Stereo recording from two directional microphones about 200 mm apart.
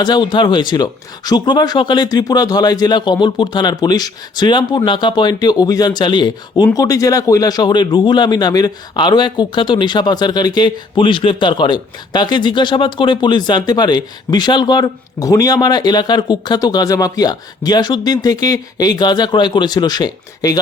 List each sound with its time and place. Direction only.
0.0 s speech: 20° left (ahead or behind)